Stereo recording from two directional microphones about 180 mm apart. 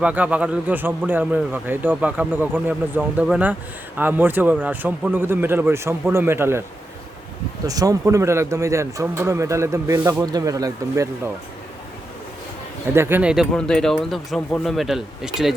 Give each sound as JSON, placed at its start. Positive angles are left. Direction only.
{"t": 0.0, "sound": "a man's voice", "side_deg": -10}
{"t": 7.7, "sound": "a man's voice", "side_deg": -20}
{"t": 12.9, "sound": "speech", "side_deg": -15}